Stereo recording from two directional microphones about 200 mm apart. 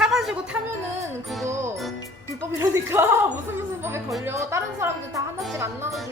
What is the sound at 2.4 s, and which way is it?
A woman's voice, 10° right (ahead or behind).